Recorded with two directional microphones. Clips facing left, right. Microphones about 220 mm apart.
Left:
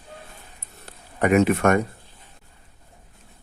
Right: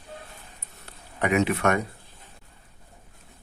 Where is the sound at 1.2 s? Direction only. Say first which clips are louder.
Left 5 dB; 45° left (ahead or behind).